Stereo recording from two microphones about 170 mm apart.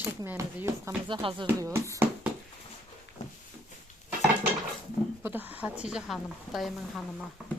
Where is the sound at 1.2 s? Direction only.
30° right (ahead or behind).